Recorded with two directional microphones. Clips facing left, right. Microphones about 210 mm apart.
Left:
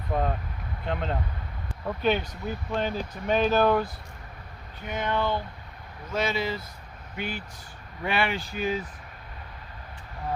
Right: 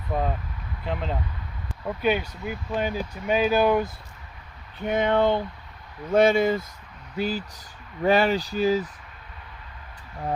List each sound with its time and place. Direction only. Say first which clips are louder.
0.1 s speech: right 1 dB; centre (ahead or behind)
4.9 s speech: right 7 dB; 60° right (ahead or behind)
7.2 s speech: right 7 dB; 35° right (ahead or behind)